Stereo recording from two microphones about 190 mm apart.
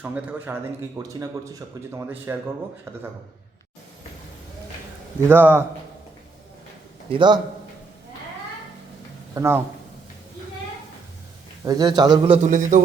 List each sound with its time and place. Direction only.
0.0 s speech: 10° right (ahead or behind)
5.3 s speech: 10° right (ahead or behind)
7.1 s speech: 25° right (ahead or behind)
9.3 s speech: 15° right (ahead or behind)
11.6 s speech: 20° right (ahead or behind)
12.5 s a man's voice: 45° right (ahead or behind)